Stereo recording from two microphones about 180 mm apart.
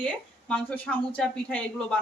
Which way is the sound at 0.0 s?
5° left (ahead or behind).